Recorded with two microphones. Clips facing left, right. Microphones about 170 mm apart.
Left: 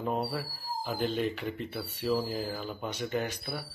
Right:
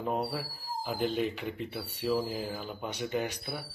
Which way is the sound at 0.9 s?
10° right (ahead or behind).